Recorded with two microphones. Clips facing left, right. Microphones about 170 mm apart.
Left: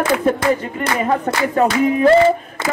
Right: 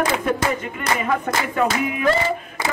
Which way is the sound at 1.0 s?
35° left (ahead or behind).